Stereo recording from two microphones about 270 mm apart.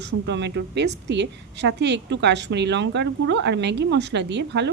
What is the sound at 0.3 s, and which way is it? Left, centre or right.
A woman's voice, right.